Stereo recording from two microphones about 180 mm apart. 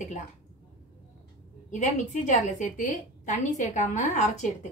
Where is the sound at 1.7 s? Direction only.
40° left (ahead or behind).